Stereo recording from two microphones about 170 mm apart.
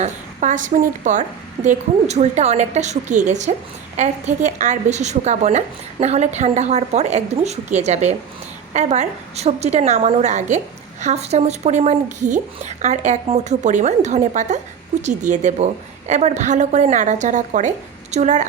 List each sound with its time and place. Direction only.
0.0 s a woman's voice: 45° right (ahead or behind)